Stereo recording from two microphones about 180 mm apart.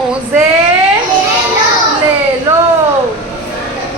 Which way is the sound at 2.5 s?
15° right (ahead or behind).